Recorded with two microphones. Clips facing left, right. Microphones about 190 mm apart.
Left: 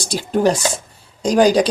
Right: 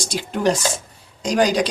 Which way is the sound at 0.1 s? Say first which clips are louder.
Left 4 dB; 35° left (ahead or behind).